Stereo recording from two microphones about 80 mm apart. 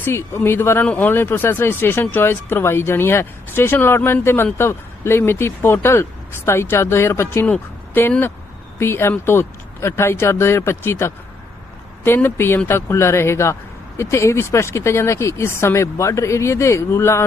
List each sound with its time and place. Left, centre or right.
0.0 s speech: left
8.8 s speech: left